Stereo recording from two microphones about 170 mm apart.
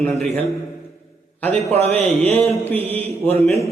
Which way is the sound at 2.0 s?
35° right (ahead or behind).